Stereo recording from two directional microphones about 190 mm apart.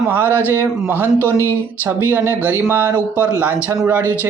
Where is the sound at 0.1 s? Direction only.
10° right (ahead or behind).